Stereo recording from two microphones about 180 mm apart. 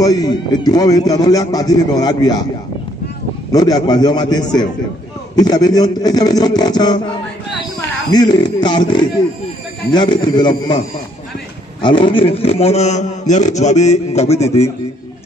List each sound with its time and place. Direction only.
0.0 s a man's voice: 20° left (ahead or behind)
3.5 s a man's voice: 20° left (ahead or behind)
8.1 s a man's voice: 25° left (ahead or behind)
11.8 s a man's voice: 25° left (ahead or behind)